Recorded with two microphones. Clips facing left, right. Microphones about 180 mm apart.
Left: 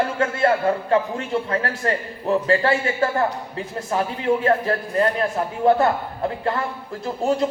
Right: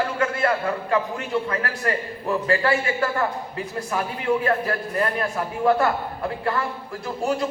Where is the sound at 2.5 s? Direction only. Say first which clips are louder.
Even; 30° left (ahead or behind).